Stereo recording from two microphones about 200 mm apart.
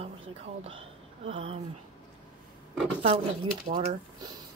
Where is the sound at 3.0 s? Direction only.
25° right (ahead or behind).